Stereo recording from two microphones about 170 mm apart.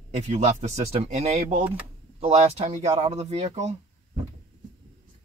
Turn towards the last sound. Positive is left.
turn(degrees=-40)  # may be behind; listen again after turning